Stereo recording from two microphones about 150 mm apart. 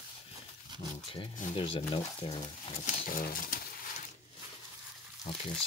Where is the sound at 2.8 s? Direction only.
60° left (ahead or behind).